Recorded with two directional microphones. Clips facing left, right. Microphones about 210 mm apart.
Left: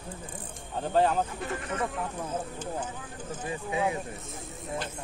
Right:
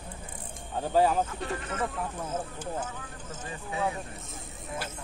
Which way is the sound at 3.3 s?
15° left (ahead or behind).